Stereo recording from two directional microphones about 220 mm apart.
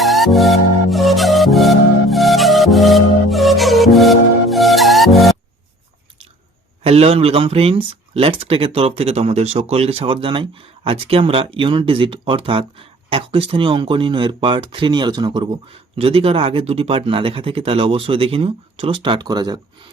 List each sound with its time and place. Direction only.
0.0 s music: centre (ahead or behind)
6.8 s speech: 25° right (ahead or behind)